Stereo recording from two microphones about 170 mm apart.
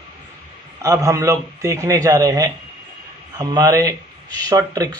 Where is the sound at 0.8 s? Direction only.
20° right (ahead or behind).